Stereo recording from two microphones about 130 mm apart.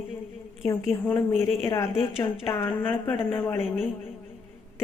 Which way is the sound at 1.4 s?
20° left (ahead or behind).